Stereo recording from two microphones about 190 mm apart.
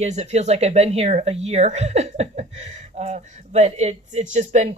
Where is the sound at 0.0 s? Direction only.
35° right (ahead or behind).